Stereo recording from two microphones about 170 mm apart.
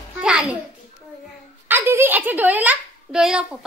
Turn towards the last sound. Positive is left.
turn(degrees=-5)  # may be behind; listen again after turning